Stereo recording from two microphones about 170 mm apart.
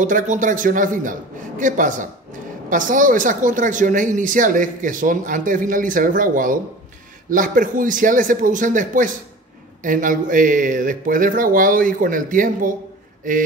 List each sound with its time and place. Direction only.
0.0 s speech: 50° right (ahead or behind)